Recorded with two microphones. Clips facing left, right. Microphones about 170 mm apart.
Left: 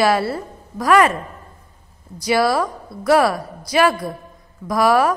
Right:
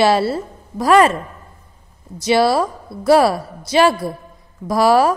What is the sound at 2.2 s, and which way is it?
A woman's voice, 25° right (ahead or behind).